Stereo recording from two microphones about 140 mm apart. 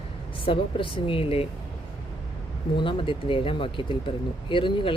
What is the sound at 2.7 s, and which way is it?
Speech, 40° left (ahead or behind).